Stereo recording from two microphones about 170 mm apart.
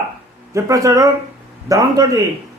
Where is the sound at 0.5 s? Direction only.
20° right (ahead or behind).